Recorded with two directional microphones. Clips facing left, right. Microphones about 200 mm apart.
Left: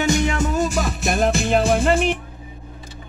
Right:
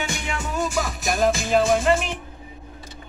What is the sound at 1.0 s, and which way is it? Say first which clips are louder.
Music: left 1 dB; 60° left (ahead or behind).